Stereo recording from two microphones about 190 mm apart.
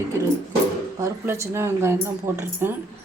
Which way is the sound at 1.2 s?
15° right (ahead or behind).